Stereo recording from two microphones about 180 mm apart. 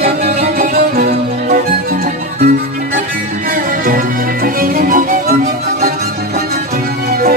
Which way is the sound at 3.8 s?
50° right (ahead or behind).